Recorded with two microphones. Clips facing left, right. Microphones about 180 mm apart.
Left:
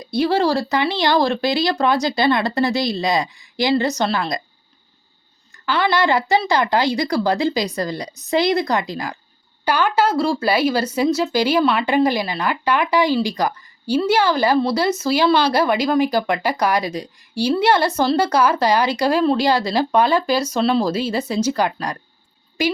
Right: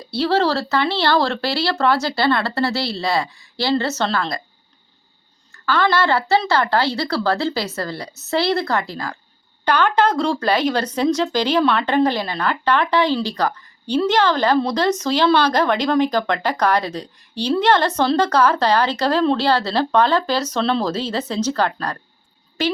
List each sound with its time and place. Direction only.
0.0 s speech: 15° left (ahead or behind)
5.6 s speech: 15° left (ahead or behind)